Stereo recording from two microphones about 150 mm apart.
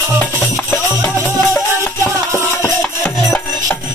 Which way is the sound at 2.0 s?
20° right (ahead or behind).